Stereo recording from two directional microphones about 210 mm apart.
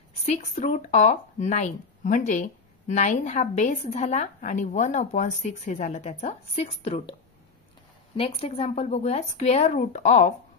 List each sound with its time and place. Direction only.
0.2 s speech: 35° left (ahead or behind)
8.2 s speech: 25° left (ahead or behind)